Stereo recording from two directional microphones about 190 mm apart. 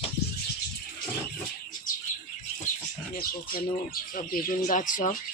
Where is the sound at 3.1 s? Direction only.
50° left (ahead or behind).